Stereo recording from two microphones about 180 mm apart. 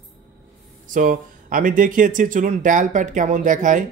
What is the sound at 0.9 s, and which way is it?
Speech, 50° right (ahead or behind).